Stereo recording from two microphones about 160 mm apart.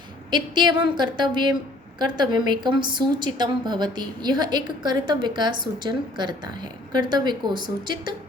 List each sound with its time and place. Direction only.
0.3 s a woman's voice: 25° right (ahead or behind)